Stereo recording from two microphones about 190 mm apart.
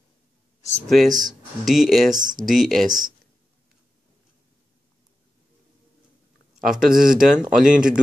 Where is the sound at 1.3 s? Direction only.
Centre (ahead or behind).